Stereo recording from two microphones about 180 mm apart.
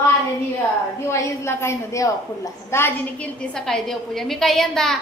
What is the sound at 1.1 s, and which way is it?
A woman's voice, 15° left (ahead or behind).